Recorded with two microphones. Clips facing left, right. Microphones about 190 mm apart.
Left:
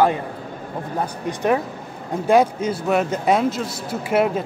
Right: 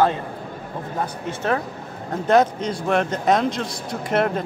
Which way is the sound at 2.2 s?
10° left (ahead or behind).